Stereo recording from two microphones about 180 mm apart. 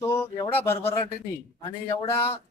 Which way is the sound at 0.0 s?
15° left (ahead or behind).